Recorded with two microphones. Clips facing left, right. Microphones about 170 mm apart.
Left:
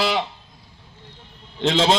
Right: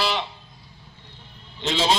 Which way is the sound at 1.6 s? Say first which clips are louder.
Left 5 dB; 90° left.